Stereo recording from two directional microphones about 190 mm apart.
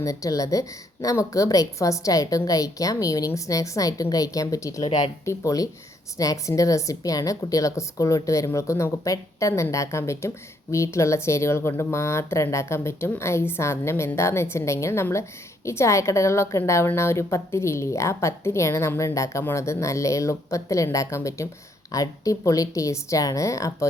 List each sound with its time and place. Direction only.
0.0 s a woman's voice: 15° left (ahead or behind)